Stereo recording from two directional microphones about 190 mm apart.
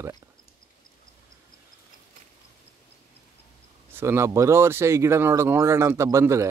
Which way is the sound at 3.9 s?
15° right (ahead or behind).